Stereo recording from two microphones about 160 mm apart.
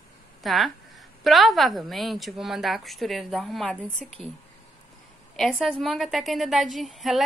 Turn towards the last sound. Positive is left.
turn(degrees=0)  # may be behind; listen again after turning